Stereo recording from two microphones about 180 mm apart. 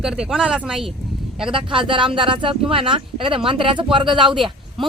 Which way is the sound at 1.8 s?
30° right (ahead or behind).